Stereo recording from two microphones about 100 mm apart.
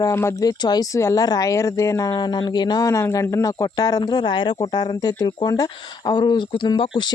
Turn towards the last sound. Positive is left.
turn(degrees=50)  # may be behind; listen again after turning